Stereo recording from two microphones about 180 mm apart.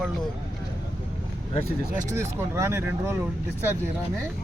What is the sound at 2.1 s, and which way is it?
Speech, 15° right (ahead or behind).